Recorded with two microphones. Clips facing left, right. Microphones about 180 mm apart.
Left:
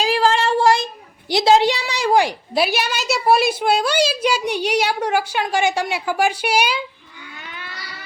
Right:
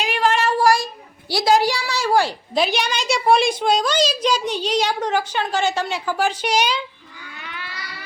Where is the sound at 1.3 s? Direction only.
25° left (ahead or behind).